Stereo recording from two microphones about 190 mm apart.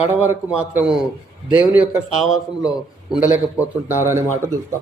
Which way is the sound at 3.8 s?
10° right (ahead or behind).